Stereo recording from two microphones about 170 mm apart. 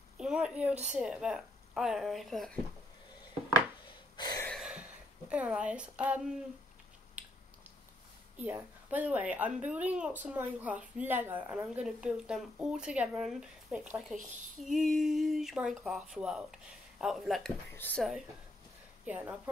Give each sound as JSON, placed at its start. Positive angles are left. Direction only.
{"t": 0.2, "sound": "a woman's voice", "side_deg": -5}
{"t": 4.2, "sound": "a sound", "side_deg": 25}
{"t": 4.5, "sound": "a sound", "side_deg": -5}
{"t": 5.3, "sound": "speech", "side_deg": -5}
{"t": 8.4, "sound": "speech", "side_deg": -10}
{"t": 17.7, "sound": "speech", "side_deg": 10}
{"t": 19.0, "sound": "speech", "side_deg": -10}